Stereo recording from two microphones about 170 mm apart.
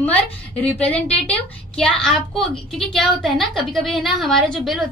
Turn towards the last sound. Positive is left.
turn(degrees=0)  # may be behind; listen again after turning